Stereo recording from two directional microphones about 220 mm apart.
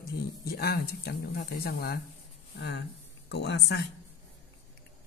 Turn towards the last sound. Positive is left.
turn(degrees=50)  # may be behind; listen again after turning